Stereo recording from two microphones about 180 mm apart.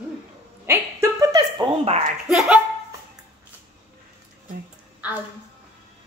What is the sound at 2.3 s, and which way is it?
Speech, centre (ahead or behind).